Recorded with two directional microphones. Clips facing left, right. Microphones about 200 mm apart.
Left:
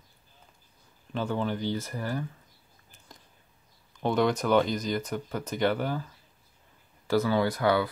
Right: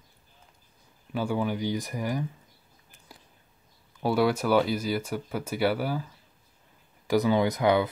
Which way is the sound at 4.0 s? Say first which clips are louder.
Right 1 dB; 10° right (ahead or behind).